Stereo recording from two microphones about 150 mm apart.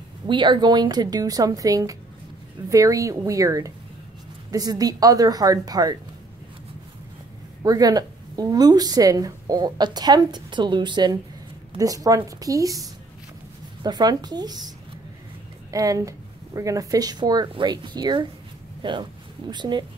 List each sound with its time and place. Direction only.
0.3 s speech: 30° right (ahead or behind)
7.6 s speech: 25° right (ahead or behind)
13.8 s speech: 30° right (ahead or behind)
15.7 s speech: 20° right (ahead or behind)